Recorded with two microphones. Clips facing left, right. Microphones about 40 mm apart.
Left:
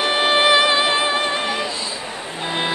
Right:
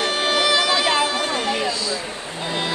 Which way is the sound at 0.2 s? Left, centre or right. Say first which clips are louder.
Left 5 dB; left.